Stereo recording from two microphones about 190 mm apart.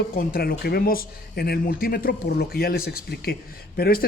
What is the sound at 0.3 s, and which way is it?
A man's voice, 55° left (ahead or behind).